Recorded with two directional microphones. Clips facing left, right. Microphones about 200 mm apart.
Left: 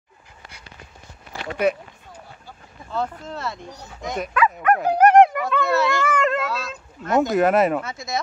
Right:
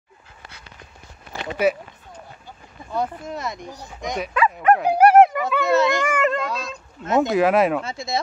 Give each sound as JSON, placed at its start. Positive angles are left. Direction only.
{"t": 1.6, "sound": "speech", "side_deg": -5}
{"t": 2.9, "sound": "speech", "side_deg": -15}
{"t": 4.8, "sound": "a sound", "side_deg": -10}
{"t": 5.7, "sound": "a sound", "side_deg": -20}
{"t": 6.2, "sound": "child singing", "side_deg": 5}
{"t": 7.2, "sound": "speech", "side_deg": 0}
{"t": 7.8, "sound": "speech", "side_deg": -30}